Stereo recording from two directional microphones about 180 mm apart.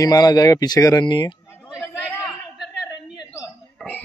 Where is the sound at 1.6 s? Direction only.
5° right (ahead or behind).